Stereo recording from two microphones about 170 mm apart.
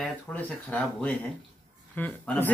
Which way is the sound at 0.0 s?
10° left (ahead or behind).